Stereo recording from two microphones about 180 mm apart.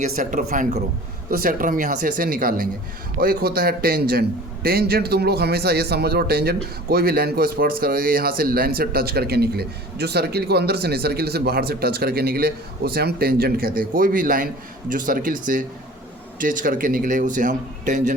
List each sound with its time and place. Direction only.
0.2 s a man's voice: 45° right (ahead or behind)